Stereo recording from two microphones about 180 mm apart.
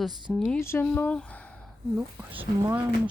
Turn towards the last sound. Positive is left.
turn(degrees=-15)  # may be behind; listen again after turning